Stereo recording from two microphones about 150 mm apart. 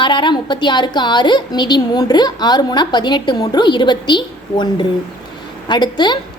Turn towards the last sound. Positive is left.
turn(degrees=30)  # may be behind; listen again after turning